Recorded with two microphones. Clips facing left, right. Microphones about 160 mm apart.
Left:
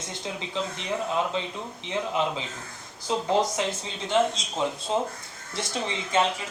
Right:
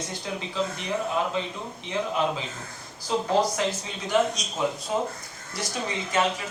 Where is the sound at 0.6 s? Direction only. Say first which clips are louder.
Right 2 dB; 20° left (ahead or behind).